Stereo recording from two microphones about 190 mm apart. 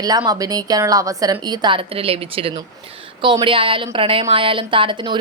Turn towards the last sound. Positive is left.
turn(degrees=-25)  # may be behind; listen again after turning